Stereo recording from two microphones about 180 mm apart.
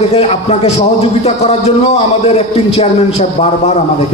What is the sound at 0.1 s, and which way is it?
A man's voice, 35° left (ahead or behind).